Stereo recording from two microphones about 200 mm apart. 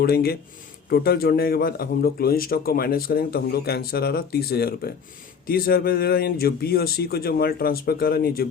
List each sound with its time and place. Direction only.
0.0 s a man's voice: 50° left (ahead or behind)